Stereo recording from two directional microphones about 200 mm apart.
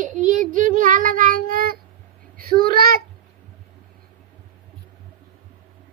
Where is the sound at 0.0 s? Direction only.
40° right (ahead or behind).